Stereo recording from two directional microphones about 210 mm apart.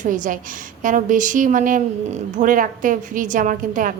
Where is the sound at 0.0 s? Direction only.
40° right (ahead or behind).